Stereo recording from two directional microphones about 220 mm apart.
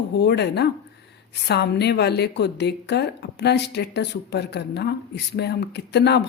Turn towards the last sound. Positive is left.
turn(degrees=50)  # may be behind; listen again after turning